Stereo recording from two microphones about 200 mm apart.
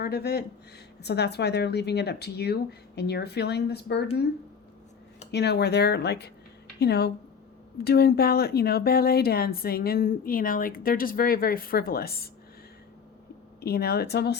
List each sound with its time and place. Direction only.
0.0 s speech: 50° left (ahead or behind)
5.3 s speech: 55° left (ahead or behind)
13.6 s speech: 50° left (ahead or behind)